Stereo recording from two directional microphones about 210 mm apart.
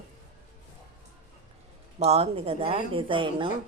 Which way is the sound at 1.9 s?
30° right (ahead or behind).